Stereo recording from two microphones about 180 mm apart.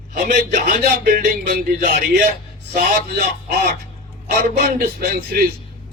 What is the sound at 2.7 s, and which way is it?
Speech, 60° right (ahead or behind).